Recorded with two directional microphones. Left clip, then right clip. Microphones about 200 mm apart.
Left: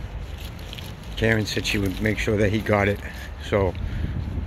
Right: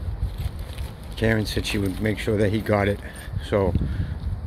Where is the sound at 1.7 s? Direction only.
10° right (ahead or behind).